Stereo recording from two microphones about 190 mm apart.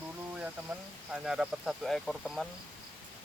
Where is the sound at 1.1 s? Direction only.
5° right (ahead or behind).